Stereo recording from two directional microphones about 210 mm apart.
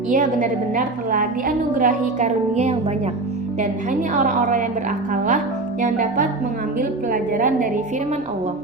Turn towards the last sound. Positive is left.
turn(degrees=-40)  # may be behind; listen again after turning